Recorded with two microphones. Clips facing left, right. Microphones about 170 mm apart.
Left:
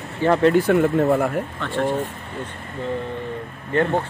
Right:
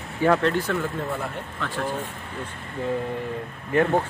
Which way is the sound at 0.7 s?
60° left (ahead or behind).